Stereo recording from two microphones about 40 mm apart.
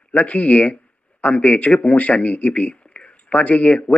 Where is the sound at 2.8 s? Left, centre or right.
Left.